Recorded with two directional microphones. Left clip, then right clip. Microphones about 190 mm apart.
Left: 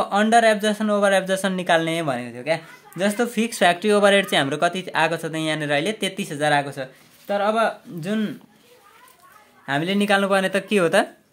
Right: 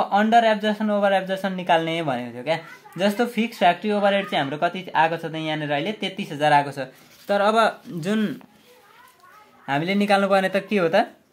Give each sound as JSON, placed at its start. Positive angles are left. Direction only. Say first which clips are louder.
{"t": 0.0, "sound": "speech", "louder": "left 1 dB", "side_deg": 20}
{"t": 6.6, "sound": "speech", "louder": "right 1 dB", "side_deg": 0}
{"t": 7.2, "sound": "speech", "louder": "right 2 dB", "side_deg": -15}
{"t": 9.7, "sound": "speech", "louder": "even", "side_deg": 10}